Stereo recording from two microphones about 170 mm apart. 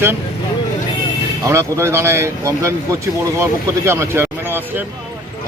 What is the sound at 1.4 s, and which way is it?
Speech, 15° right (ahead or behind).